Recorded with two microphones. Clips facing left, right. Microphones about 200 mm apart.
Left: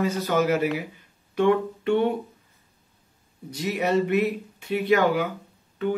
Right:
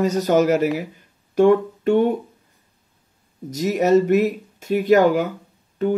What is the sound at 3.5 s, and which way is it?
Speech, 40° right (ahead or behind).